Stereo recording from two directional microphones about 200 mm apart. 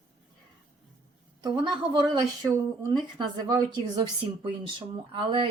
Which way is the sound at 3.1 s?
20° right (ahead or behind).